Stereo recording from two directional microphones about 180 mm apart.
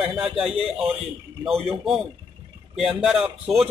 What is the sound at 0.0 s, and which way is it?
Speech, 5° right (ahead or behind).